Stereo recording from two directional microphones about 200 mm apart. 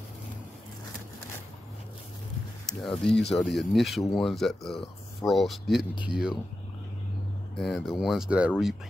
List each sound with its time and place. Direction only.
2.6 s speech: centre (ahead or behind)
7.5 s speech: centre (ahead or behind)